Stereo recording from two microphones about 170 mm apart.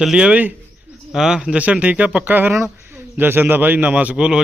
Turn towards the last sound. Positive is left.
turn(degrees=-5)  # may be behind; listen again after turning